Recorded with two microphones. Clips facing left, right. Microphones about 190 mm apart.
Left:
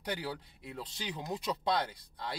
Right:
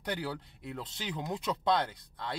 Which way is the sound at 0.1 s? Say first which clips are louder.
Right 2 dB; 5° left (ahead or behind).